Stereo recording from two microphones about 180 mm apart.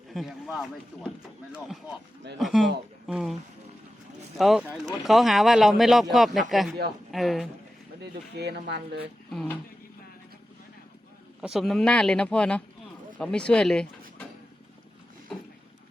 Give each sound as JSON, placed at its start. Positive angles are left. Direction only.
{"t": 0.1, "sound": "speech", "side_deg": 0}
{"t": 4.4, "sound": "speech", "side_deg": 0}
{"t": 8.0, "sound": "speech", "side_deg": -70}
{"t": 11.3, "sound": "speech", "side_deg": 0}
{"t": 15.3, "sound": "vehicle", "side_deg": 0}